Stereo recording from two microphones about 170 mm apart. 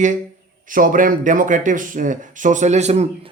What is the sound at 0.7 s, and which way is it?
Speech, 50° right (ahead or behind).